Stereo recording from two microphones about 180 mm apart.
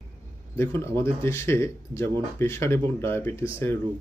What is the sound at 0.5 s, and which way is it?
Speech, 10° left (ahead or behind).